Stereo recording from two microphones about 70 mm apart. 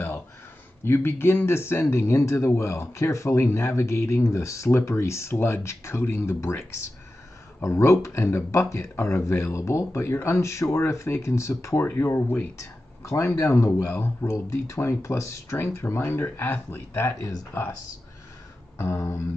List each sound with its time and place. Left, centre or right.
0.8 s speech: left
7.6 s speech: left
12.5 s a sound: left
13.2 s speech: left
18.8 s speech: left